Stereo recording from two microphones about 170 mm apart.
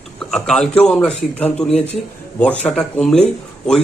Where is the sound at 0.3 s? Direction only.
5° left (ahead or behind).